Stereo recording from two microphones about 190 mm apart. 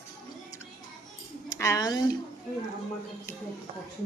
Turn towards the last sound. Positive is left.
turn(degrees=-35)  # may be behind; listen again after turning